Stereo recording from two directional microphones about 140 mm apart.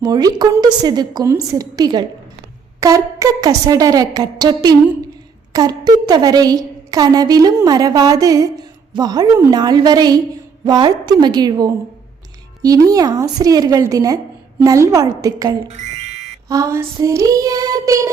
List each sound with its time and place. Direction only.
0.0 s a woman's voice: 25° right (ahead or behind)
15.7 s fire alarm: 55° right (ahead or behind)
16.5 s a woman's voice: 25° right (ahead or behind)